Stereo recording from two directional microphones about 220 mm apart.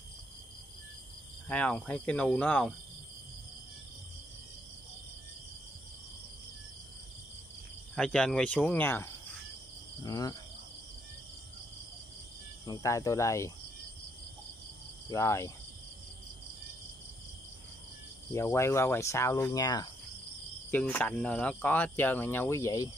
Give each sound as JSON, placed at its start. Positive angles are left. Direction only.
{"t": 1.5, "sound": "speech", "side_deg": 5}
{"t": 7.9, "sound": "speech", "side_deg": 5}
{"t": 12.6, "sound": "speech", "side_deg": 15}
{"t": 15.0, "sound": "speech", "side_deg": 15}
{"t": 18.3, "sound": "speech", "side_deg": 10}